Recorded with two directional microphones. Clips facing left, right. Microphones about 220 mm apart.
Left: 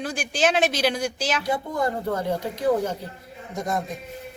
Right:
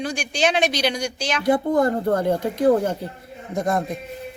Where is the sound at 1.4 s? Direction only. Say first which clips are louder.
Right 10 dB; 55° right (ahead or behind).